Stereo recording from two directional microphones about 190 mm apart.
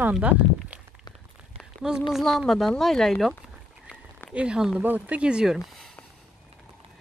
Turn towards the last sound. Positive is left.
turn(degrees=0)  # may be behind; listen again after turning